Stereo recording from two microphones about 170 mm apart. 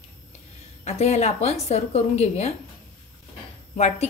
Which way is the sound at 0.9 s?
40° left (ahead or behind).